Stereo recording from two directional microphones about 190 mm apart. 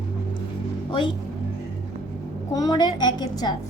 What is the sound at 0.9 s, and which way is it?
Speech, 25° left (ahead or behind).